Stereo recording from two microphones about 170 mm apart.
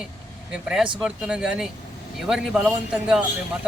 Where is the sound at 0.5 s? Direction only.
5° right (ahead or behind).